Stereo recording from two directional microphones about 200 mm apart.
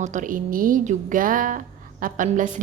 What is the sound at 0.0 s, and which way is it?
A woman's voice, 40° right (ahead or behind).